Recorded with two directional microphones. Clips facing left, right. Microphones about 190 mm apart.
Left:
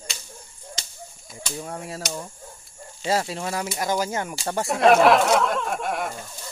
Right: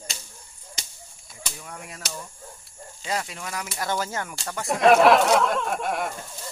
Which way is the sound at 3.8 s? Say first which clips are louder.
Left 2 dB; 15° left (ahead or behind).